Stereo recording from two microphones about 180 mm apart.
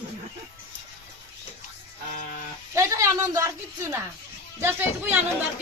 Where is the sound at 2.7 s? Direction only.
15° right (ahead or behind).